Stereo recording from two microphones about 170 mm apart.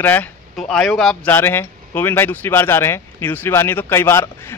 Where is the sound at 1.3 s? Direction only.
15° left (ahead or behind).